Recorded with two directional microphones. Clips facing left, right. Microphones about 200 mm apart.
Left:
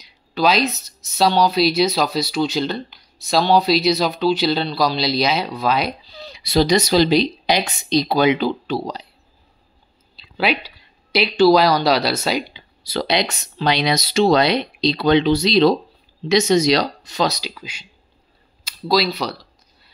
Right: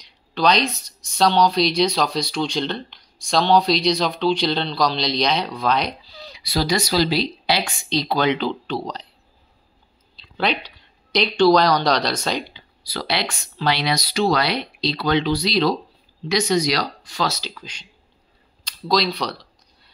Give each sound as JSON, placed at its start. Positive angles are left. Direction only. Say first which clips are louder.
{"t": 0.0, "sound": "speech", "louder": "left 1 dB", "side_deg": 5}
{"t": 6.1, "sound": "speech", "louder": "left 7 dB", "side_deg": 25}
{"t": 10.1, "sound": "speech", "louder": "left 2 dB", "side_deg": 5}
{"t": 12.8, "sound": "speech", "louder": "left 5 dB", "side_deg": 20}